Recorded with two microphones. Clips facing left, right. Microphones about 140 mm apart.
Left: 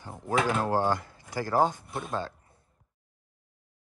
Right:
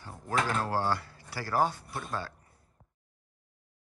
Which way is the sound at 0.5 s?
20° left (ahead or behind).